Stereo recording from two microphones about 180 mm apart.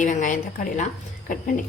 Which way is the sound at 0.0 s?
45° left (ahead or behind).